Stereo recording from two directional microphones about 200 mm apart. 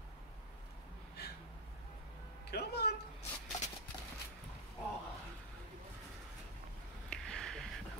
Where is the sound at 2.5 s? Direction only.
55° left (ahead or behind).